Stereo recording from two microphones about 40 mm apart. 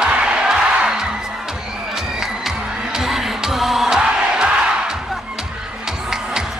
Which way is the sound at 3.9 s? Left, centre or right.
Centre.